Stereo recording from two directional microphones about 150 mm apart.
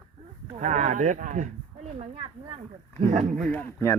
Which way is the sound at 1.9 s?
40° right (ahead or behind).